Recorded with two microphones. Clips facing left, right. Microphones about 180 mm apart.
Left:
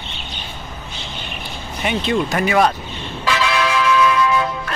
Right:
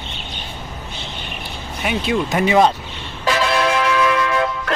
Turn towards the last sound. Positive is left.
turn(degrees=-60)  # may be behind; listen again after turning